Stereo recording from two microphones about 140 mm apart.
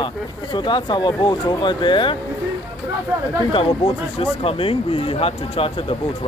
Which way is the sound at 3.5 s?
40° left (ahead or behind).